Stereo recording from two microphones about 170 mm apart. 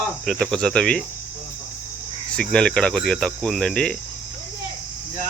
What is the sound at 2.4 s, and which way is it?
Speech, 5° left (ahead or behind).